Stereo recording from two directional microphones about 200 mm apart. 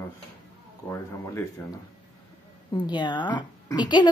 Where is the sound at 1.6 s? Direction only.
10° left (ahead or behind).